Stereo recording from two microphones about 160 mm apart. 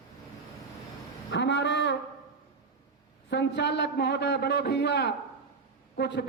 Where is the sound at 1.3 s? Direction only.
90° left.